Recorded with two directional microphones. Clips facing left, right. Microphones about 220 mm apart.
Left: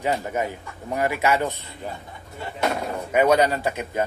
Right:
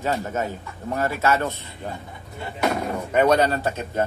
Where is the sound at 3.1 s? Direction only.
10° left (ahead or behind).